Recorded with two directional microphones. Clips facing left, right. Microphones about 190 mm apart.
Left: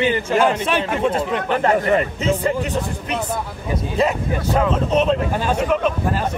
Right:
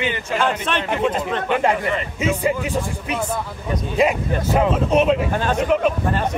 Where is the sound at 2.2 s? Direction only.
10° right (ahead or behind).